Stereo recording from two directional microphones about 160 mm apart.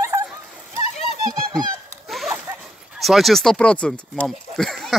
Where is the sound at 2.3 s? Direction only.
15° right (ahead or behind).